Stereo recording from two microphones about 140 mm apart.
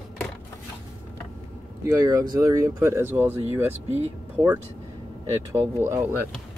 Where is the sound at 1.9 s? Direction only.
25° right (ahead or behind).